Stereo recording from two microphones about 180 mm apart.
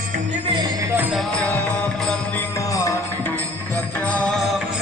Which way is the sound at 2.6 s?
20° left (ahead or behind).